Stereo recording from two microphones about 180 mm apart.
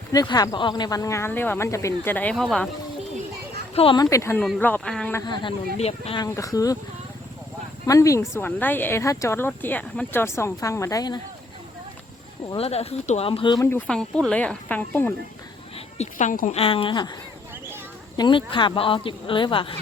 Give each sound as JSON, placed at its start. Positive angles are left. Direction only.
{"t": 0.1, "sound": "speech", "side_deg": 20}
{"t": 3.8, "sound": "speech", "side_deg": 25}
{"t": 5.1, "sound": "speech", "side_deg": 25}
{"t": 5.7, "sound": "speech", "side_deg": 35}
{"t": 6.1, "sound": "speech", "side_deg": 15}
{"t": 7.9, "sound": "speech", "side_deg": 15}
{"t": 12.5, "sound": "speech", "side_deg": 35}
{"t": 13.7, "sound": "speech", "side_deg": 5}
{"t": 16.0, "sound": "speech", "side_deg": 45}
{"t": 16.6, "sound": "speech", "side_deg": 30}
{"t": 18.2, "sound": "speech", "side_deg": 25}